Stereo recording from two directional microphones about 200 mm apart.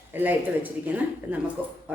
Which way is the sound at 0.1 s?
10° right (ahead or behind).